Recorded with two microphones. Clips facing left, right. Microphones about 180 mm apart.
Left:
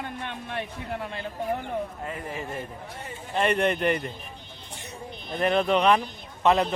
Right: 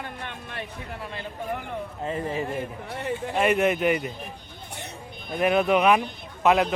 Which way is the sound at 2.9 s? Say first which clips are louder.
Right 9 dB; 65° right (ahead or behind).